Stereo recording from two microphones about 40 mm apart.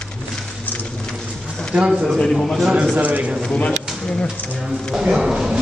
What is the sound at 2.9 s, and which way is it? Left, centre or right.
Speech, right.